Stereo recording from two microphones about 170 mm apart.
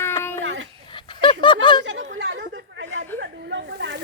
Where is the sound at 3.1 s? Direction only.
90° right.